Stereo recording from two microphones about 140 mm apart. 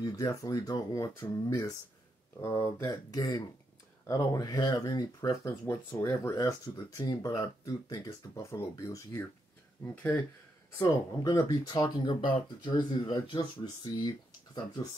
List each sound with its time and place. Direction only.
0.0 s speech: 25° left (ahead or behind)
5.4 s speech: 15° left (ahead or behind)
10.8 s speech: 25° left (ahead or behind)